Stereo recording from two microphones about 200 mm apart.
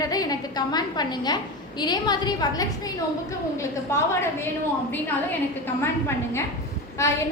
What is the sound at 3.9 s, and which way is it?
Speech, 15° left (ahead or behind).